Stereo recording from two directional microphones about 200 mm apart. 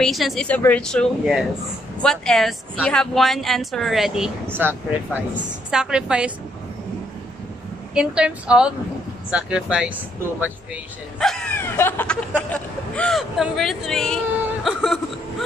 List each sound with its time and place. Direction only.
0.0 s a woman's voice: centre (ahead or behind)
7.9 s a woman's voice: 5° right (ahead or behind)
11.1 s a woman's voice: 5° left (ahead or behind)